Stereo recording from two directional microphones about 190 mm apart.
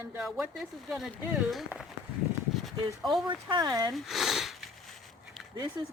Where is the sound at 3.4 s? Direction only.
20° right (ahead or behind).